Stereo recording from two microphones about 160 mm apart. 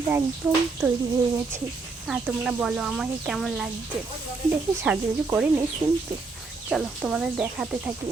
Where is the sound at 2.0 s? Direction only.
5° right (ahead or behind).